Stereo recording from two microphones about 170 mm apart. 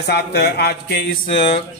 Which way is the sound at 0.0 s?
75° left (ahead or behind).